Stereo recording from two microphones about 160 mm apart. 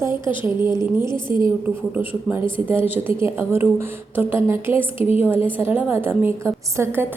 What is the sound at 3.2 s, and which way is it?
Speech, 15° right (ahead or behind).